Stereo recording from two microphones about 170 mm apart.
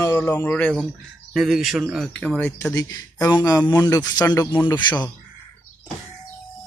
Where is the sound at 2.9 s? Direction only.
20° left (ahead or behind).